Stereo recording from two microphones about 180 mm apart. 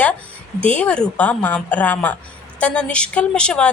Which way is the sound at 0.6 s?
5° left (ahead or behind).